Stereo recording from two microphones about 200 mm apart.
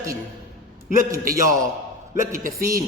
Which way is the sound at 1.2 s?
45° right (ahead or behind).